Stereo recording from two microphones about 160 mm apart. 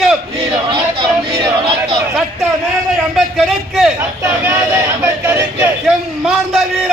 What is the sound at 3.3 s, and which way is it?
Speech, centre (ahead or behind).